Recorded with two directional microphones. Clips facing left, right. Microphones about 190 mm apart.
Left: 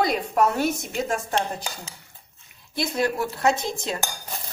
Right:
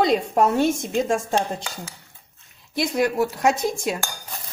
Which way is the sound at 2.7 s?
15° right (ahead or behind).